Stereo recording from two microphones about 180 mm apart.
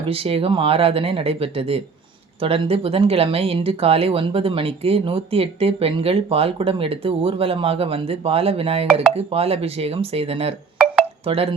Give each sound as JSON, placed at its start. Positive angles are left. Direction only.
{"t": 0.1, "sound": "speech", "side_deg": -30}